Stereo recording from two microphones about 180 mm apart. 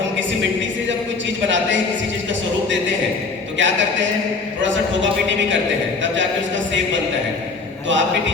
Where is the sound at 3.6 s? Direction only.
90° right.